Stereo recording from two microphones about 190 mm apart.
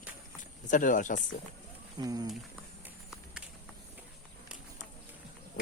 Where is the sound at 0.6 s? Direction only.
45° left (ahead or behind).